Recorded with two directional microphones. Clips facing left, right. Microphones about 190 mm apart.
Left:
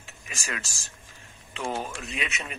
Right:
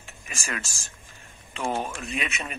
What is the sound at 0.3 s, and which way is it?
Speech, 50° right (ahead or behind).